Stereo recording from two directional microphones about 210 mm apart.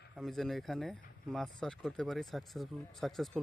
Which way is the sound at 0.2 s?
Centre (ahead or behind).